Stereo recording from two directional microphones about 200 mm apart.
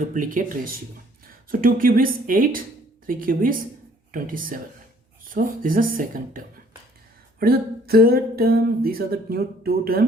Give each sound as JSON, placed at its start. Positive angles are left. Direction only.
{"t": 0.0, "sound": "speech", "side_deg": -40}